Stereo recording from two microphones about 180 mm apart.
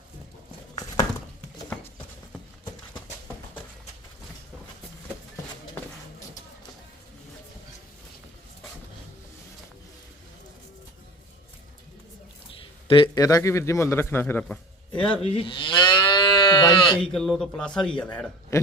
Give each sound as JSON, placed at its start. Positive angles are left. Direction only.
{"t": 1.7, "sound": "clip-clop", "side_deg": 10}
{"t": 12.9, "sound": "a man's voice", "side_deg": 25}
{"t": 15.2, "sound": "moo", "side_deg": 30}
{"t": 17.0, "sound": "a man's voice", "side_deg": 5}